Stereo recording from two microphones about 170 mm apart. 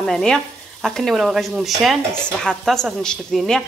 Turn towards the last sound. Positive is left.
turn(degrees=5)  # may be behind; listen again after turning